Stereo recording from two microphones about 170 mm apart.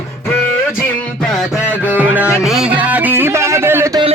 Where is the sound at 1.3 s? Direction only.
5° right (ahead or behind).